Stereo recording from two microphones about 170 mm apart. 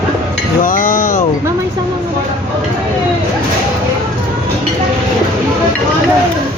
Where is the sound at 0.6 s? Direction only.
55° left (ahead or behind).